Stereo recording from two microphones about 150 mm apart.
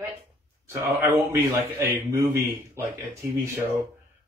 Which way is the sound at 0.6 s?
15° right (ahead or behind).